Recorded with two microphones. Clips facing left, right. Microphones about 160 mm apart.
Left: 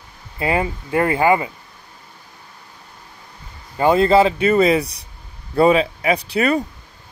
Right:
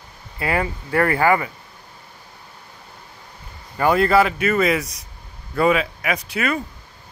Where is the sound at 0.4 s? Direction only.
20° left (ahead or behind).